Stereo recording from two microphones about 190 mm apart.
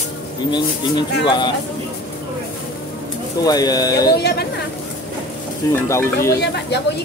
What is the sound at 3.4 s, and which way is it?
Speech, 20° left (ahead or behind).